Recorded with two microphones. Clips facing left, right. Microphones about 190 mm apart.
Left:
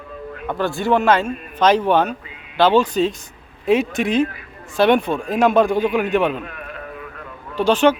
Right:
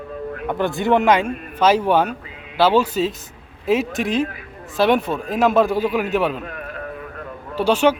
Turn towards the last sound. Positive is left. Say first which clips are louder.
# left 1 dB
turn(degrees=-10)  # may be behind; listen again after turning